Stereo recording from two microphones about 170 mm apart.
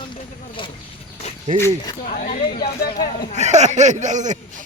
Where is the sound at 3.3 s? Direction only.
45° right (ahead or behind).